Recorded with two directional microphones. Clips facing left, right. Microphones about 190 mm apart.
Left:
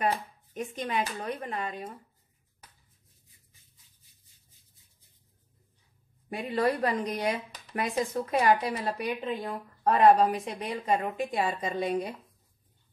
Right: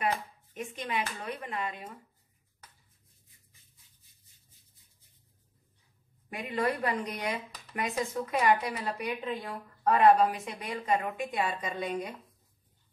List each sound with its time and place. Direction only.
0.6 s speech: 40° left (ahead or behind)
6.3 s speech: 35° left (ahead or behind)